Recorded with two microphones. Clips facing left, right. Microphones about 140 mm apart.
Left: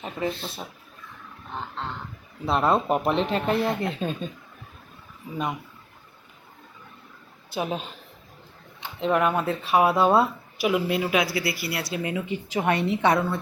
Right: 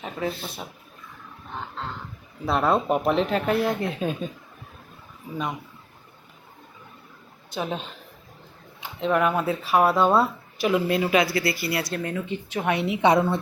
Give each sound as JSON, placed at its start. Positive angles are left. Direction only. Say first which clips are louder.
{"t": 0.0, "sound": "speech", "louder": "even", "side_deg": 0}
{"t": 1.8, "sound": "speech", "louder": "left 1 dB", "side_deg": 0}
{"t": 7.5, "sound": "speech", "louder": "left 1 dB", "side_deg": 5}
{"t": 12.8, "sound": "a woman's voice", "louder": "right 2 dB", "side_deg": -15}